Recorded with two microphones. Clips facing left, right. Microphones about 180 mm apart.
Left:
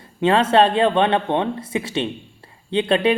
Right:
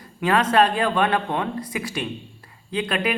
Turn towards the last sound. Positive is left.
turn(degrees=30)  # may be behind; listen again after turning